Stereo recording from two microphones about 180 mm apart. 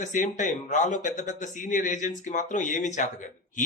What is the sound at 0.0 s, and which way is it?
Speech, 45° left (ahead or behind).